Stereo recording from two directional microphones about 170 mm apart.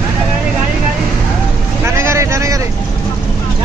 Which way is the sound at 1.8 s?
15° right (ahead or behind).